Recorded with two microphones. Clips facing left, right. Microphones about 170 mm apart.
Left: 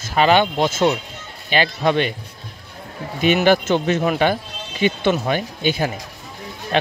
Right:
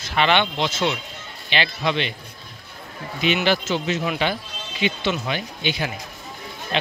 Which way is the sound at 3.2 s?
50° left (ahead or behind).